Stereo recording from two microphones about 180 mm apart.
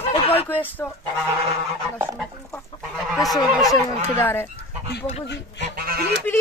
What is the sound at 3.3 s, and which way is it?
Speech, 20° left (ahead or behind).